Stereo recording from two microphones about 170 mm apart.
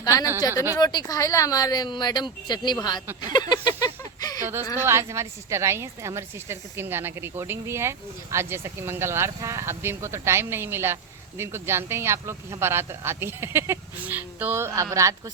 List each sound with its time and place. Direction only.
0.0 s a woman's voice: 20° left (ahead or behind)
3.3 s a sound: 25° left (ahead or behind)
4.8 s a woman's voice: 15° right (ahead or behind)